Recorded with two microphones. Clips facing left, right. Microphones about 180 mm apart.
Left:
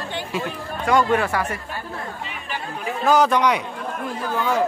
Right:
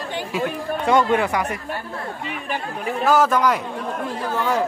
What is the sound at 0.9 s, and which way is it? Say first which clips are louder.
Speech: right 1 dB; 20° right (ahead or behind).